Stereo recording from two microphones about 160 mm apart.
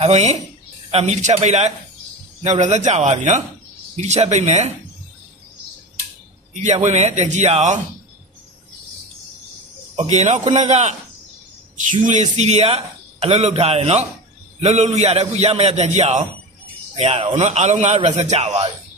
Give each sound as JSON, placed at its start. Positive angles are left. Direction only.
{"t": 0.0, "sound": "a man's voice", "side_deg": -45}
{"t": 6.5, "sound": "a man's voice", "side_deg": -45}
{"t": 9.9, "sound": "a man's voice", "side_deg": -45}